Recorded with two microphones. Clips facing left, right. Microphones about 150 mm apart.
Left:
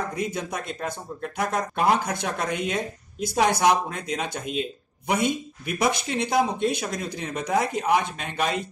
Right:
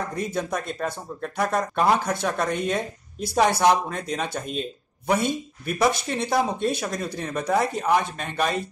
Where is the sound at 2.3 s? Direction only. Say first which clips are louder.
Right 2 dB; 15° left (ahead or behind).